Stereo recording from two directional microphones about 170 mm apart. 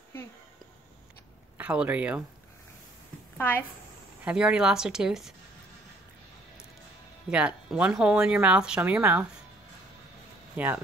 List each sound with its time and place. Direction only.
1.6 s speech: 10° right (ahead or behind)
3.3 s a woman's voice: 10° left (ahead or behind)
4.2 s speech: 5° right (ahead or behind)
7.2 s speech: 5° right (ahead or behind)
10.5 s speech: 10° right (ahead or behind)